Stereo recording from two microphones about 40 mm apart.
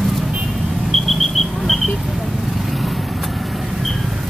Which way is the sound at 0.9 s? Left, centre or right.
Centre.